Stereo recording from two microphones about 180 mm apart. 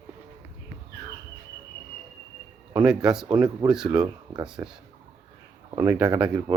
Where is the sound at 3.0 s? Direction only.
5° right (ahead or behind).